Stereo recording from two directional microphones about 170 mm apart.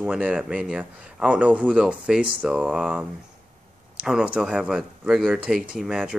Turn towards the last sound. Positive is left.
turn(degrees=-5)  # may be behind; listen again after turning